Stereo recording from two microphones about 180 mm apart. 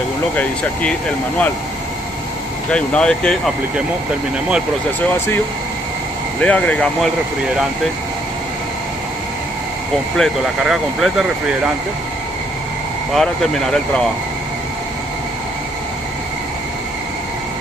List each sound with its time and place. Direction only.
0.4 s speech: 10° left (ahead or behind)
2.7 s speech: 5° left (ahead or behind)
6.4 s speech: 10° left (ahead or behind)
10.1 s speech: centre (ahead or behind)
13.1 s speech: centre (ahead or behind)